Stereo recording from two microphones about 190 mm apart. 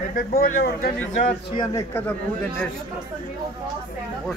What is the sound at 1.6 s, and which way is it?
Speech, 15° left (ahead or behind).